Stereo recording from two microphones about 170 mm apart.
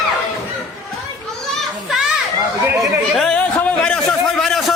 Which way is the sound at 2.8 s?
5° left (ahead or behind).